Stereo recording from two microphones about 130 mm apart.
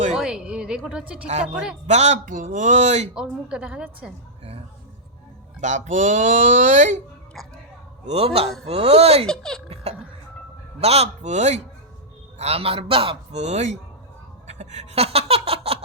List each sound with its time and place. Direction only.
0.1 s a sound: 5° right (ahead or behind)
0.8 s a woman's voice: 5° right (ahead or behind)
1.9 s speech: 60° right (ahead or behind)
3.2 s a woman's voice: 5° right (ahead or behind)
5.5 s speech: 70° right (ahead or behind)
7.4 s speech: centre (ahead or behind)
8.0 s a man's voice: 50° right (ahead or behind)
9.2 s speech: 5° left (ahead or behind)
10.8 s speech: 50° right (ahead or behind)
12.4 s a man's voice: 50° right (ahead or behind)
14.4 s laughter: 60° right (ahead or behind)